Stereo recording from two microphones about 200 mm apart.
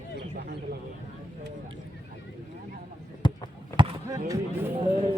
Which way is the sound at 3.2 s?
20° left (ahead or behind).